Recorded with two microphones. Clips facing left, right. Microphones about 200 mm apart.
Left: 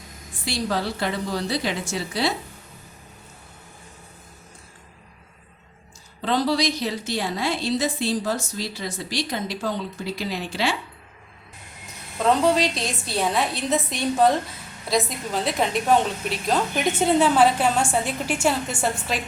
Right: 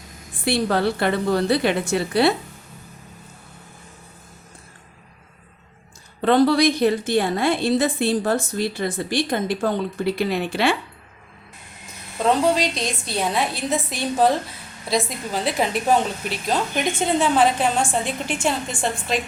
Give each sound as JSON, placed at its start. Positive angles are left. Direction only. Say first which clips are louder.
{"t": 0.4, "sound": "a woman's voice", "louder": "right 6 dB", "side_deg": -60}
{"t": 6.2, "sound": "a woman's voice", "louder": "right 6 dB", "side_deg": -55}
{"t": 12.2, "sound": "a woman's voice", "louder": "even", "side_deg": 0}